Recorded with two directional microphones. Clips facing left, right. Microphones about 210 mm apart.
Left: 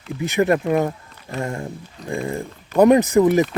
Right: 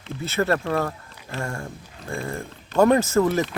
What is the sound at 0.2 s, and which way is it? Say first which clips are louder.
Speech: left 5 dB; 15° left (ahead or behind).